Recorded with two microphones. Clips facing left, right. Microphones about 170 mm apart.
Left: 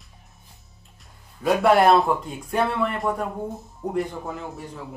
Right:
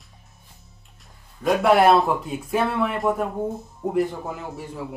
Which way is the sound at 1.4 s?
Centre (ahead or behind).